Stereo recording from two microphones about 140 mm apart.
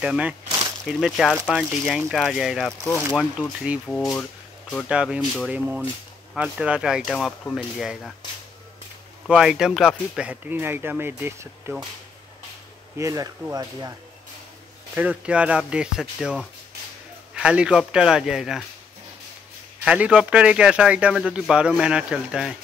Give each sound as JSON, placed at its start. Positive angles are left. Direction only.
{"t": 0.0, "sound": "speech", "side_deg": -10}
{"t": 3.8, "sound": "speech", "side_deg": 5}
{"t": 4.8, "sound": "speech", "side_deg": -5}
{"t": 9.3, "sound": "speech", "side_deg": -5}
{"t": 12.9, "sound": "speech", "side_deg": -25}
{"t": 15.0, "sound": "speech", "side_deg": -10}
{"t": 19.8, "sound": "speech", "side_deg": -5}